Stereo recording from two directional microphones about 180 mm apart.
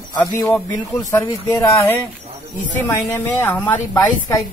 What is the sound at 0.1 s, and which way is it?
Speech, 20° left (ahead or behind).